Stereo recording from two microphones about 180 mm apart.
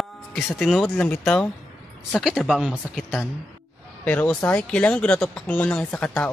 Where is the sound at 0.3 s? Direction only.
Centre (ahead or behind).